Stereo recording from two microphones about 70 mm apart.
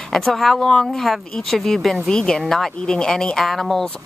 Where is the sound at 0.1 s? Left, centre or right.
Centre.